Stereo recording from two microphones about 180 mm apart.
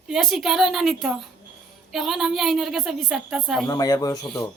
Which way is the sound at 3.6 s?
20° left (ahead or behind).